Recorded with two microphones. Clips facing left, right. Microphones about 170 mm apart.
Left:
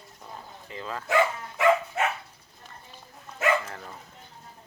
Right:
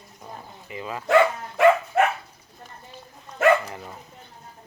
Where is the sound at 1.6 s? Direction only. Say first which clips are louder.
Right 5 dB; 60° right (ahead or behind).